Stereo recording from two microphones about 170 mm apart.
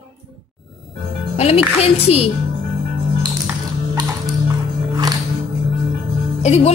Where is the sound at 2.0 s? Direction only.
35° left (ahead or behind).